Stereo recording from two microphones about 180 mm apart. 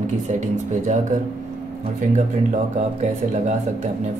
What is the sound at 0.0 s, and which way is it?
Speech, 40° right (ahead or behind).